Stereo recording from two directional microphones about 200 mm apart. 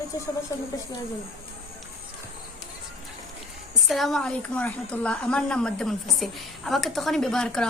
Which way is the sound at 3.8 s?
Centre (ahead or behind).